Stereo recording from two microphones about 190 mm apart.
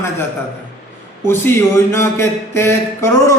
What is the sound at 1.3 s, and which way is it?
Speech, 10° left (ahead or behind).